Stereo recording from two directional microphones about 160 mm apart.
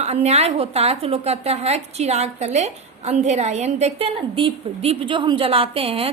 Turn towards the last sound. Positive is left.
turn(degrees=-35)  # may be behind; listen again after turning